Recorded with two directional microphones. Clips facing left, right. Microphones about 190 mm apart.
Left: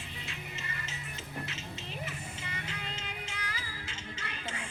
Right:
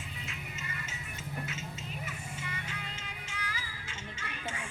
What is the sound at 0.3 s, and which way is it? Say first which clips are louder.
Music: even; 35° left (ahead or behind).